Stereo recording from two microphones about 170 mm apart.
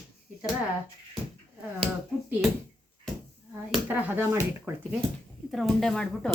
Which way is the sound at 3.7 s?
10° right (ahead or behind).